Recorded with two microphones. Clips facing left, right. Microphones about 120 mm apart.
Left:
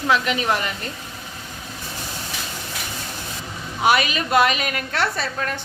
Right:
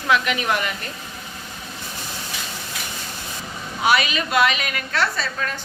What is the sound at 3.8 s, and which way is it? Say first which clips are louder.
A woman's voice: left 1 dB; 50° left (ahead or behind).